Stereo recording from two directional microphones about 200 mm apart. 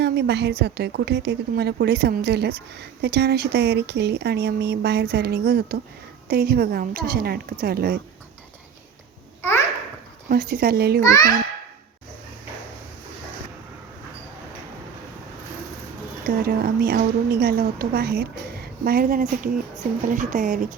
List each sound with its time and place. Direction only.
0.0 s a woman's voice: 55° right (ahead or behind)
9.4 s babbling: 10° left (ahead or behind)
10.2 s a woman's voice: 45° right (ahead or behind)
16.2 s a woman's voice: 50° right (ahead or behind)
20.1 s a sound: 40° right (ahead or behind)